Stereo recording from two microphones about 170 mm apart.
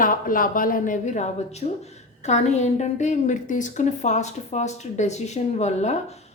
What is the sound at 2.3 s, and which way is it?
A woman's voice, 40° left (ahead or behind).